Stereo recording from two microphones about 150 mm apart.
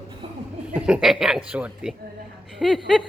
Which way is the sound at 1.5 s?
5° right (ahead or behind).